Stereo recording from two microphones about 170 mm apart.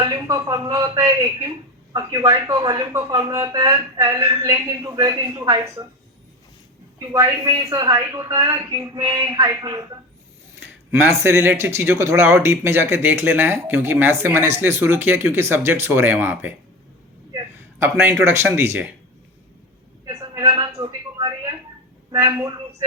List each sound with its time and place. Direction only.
0.0 s speech: 20° right (ahead or behind)
7.0 s speech: 20° right (ahead or behind)
11.0 s a man's voice: 15° right (ahead or behind)
20.1 s a sound: 25° right (ahead or behind)
22.1 s speech: 15° right (ahead or behind)